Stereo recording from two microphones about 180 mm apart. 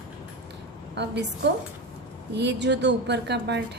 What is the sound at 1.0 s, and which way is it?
A woman's voice, 70° right (ahead or behind).